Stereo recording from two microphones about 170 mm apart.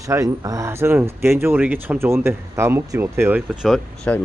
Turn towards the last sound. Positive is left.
turn(degrees=5)  # may be behind; listen again after turning